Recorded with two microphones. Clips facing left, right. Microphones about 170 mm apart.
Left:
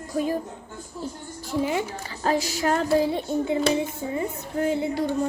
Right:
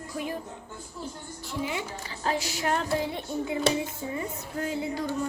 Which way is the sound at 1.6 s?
45° left (ahead or behind).